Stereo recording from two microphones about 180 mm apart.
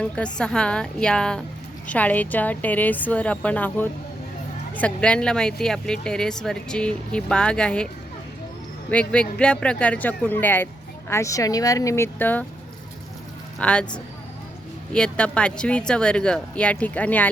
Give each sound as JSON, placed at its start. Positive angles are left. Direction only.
{"t": 0.0, "sound": "a woman's voice", "side_deg": 5}
{"t": 8.9, "sound": "a woman's voice", "side_deg": 5}
{"t": 13.6, "sound": "a woman's voice", "side_deg": 5}
{"t": 14.9, "sound": "a woman's voice", "side_deg": 5}